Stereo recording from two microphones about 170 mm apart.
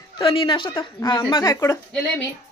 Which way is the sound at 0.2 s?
30° left (ahead or behind).